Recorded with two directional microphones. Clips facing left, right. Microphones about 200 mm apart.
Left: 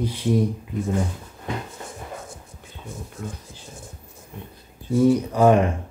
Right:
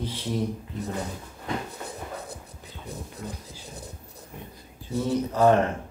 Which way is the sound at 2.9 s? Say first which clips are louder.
Left 2 dB; 35° right (ahead or behind).